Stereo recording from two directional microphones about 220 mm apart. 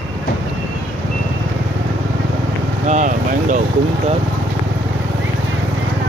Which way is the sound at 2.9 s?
35° right (ahead or behind).